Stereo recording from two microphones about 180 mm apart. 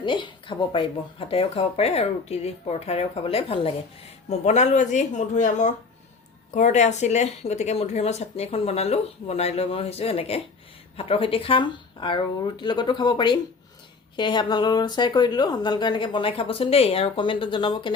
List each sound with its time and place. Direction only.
0.0 s speech: 25° left (ahead or behind)